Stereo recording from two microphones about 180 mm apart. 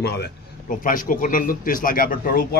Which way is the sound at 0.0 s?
65° left (ahead or behind).